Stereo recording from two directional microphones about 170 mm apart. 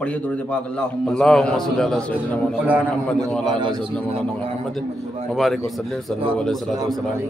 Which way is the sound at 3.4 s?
30° right (ahead or behind).